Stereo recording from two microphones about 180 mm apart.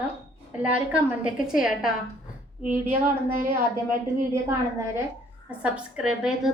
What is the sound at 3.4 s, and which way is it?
Speech, 50° right (ahead or behind).